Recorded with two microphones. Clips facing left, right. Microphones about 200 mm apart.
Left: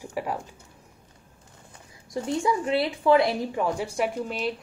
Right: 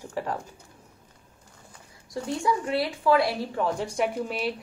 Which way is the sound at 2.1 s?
20° left (ahead or behind).